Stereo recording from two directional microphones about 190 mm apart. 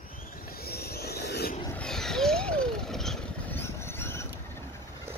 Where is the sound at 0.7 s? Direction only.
55° left (ahead or behind).